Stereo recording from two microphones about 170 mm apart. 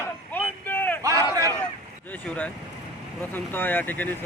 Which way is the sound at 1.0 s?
20° right (ahead or behind).